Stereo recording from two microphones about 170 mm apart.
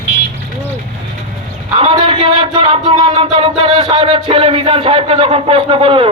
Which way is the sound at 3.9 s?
30° right (ahead or behind).